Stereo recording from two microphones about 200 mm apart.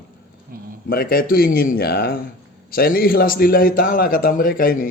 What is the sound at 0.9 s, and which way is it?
Speech, 45° left (ahead or behind).